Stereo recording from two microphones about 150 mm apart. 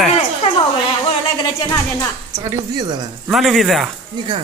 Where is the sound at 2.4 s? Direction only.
25° right (ahead or behind).